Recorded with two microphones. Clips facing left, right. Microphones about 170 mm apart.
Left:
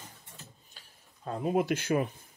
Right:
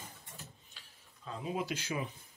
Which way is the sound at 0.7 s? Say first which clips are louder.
Left 2 dB; 50° left (ahead or behind).